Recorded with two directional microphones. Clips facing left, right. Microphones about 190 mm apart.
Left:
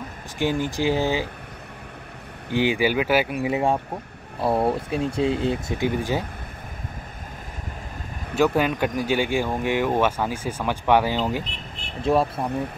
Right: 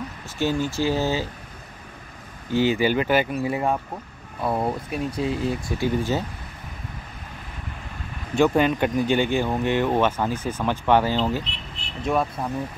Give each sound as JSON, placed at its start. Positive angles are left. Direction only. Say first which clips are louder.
{"t": 0.4, "sound": "speech", "louder": "even", "side_deg": 15}
{"t": 2.5, "sound": "speech", "louder": "right 1 dB", "side_deg": 15}
{"t": 4.4, "sound": "speech", "louder": "left 3 dB", "side_deg": 30}
{"t": 8.4, "sound": "speech", "louder": "right 1 dB", "side_deg": 5}
{"t": 11.4, "sound": "a sound", "louder": "left 1 dB", "side_deg": 45}
{"t": 12.0, "sound": "speech", "louder": "left 3 dB", "side_deg": 30}